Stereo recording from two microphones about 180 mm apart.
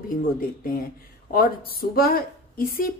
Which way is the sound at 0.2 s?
50° left (ahead or behind).